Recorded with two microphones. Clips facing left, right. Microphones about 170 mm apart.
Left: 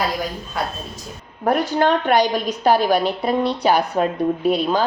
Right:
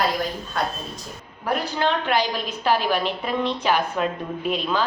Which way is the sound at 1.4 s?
50° left (ahead or behind).